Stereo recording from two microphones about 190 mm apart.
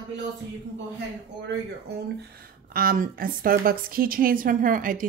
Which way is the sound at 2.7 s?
50° right (ahead or behind).